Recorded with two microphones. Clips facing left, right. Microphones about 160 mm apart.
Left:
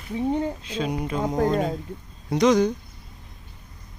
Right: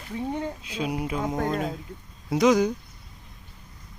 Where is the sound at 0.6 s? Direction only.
10° right (ahead or behind).